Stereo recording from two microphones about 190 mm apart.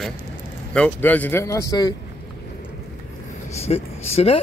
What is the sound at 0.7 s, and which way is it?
Speech, 5° left (ahead or behind).